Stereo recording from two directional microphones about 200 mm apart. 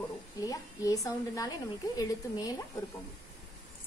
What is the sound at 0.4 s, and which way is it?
A woman's voice, 15° left (ahead or behind).